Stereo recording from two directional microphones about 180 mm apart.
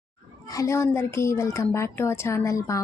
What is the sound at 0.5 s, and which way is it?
Speech, 15° left (ahead or behind).